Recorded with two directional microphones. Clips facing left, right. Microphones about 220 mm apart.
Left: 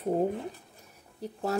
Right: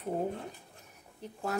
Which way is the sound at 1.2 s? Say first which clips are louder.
Left 7 dB; 35° left (ahead or behind).